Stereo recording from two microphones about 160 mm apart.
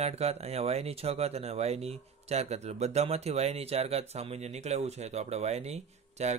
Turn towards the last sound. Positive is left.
turn(degrees=-45)  # may be behind; listen again after turning